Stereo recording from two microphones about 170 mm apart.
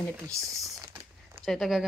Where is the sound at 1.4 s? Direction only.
Centre (ahead or behind).